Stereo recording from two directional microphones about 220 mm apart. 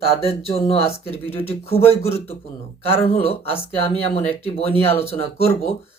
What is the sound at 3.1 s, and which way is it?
A man's voice, 25° left (ahead or behind).